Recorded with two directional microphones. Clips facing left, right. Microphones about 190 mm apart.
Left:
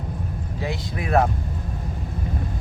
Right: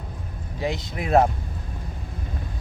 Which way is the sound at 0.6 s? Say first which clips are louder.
Right 2 dB; 20° right (ahead or behind).